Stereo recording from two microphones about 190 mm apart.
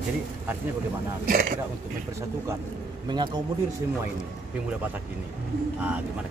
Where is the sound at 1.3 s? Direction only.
50° right (ahead or behind).